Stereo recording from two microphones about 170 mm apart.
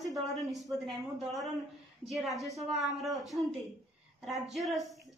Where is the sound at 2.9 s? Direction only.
Centre (ahead or behind).